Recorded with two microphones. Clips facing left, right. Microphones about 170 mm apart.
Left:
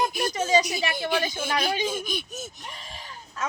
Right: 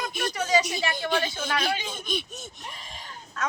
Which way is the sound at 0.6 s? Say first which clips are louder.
Left 1 dB; 5° left (ahead or behind).